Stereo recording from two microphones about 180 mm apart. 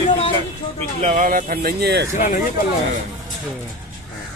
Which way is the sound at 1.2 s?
50° right (ahead or behind).